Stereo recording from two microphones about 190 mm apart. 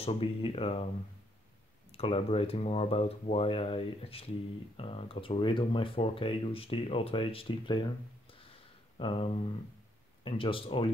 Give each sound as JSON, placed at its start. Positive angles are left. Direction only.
{"t": 0.0, "sound": "speech", "side_deg": 30}
{"t": 1.9, "sound": "speech", "side_deg": 30}